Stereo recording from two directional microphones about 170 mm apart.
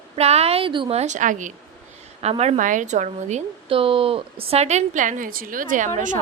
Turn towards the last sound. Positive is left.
turn(degrees=-50)  # may be behind; listen again after turning